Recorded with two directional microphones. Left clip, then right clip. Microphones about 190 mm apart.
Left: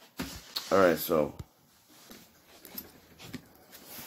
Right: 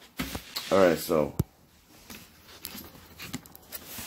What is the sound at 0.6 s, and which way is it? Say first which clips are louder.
Speech: right 2 dB; 5° left (ahead or behind).